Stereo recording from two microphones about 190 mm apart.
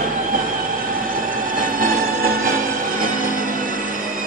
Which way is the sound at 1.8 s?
45° right (ahead or behind).